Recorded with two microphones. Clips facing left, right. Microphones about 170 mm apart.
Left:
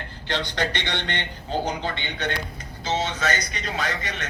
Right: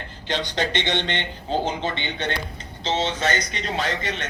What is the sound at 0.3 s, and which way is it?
A man's voice, 20° right (ahead or behind).